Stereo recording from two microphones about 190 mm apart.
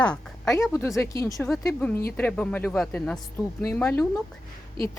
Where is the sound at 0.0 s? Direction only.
5° left (ahead or behind).